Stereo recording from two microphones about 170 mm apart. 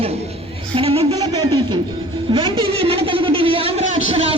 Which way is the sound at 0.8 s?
35° right (ahead or behind).